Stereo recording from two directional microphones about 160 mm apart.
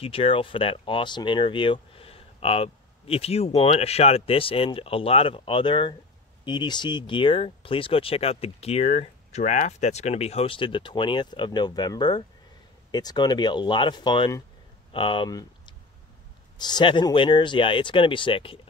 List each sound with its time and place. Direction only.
0.0 s speech: 35° left (ahead or behind)